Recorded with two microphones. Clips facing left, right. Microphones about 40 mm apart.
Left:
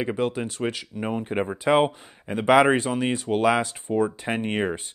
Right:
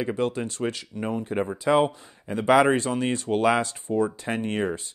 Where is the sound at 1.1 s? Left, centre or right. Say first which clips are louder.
Left 1 dB; left.